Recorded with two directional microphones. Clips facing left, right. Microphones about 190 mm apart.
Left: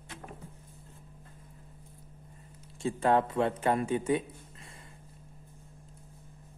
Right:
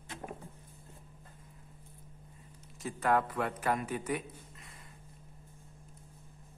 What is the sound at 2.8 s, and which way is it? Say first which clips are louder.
A man's voice: left 4 dB; 25° left (ahead or behind).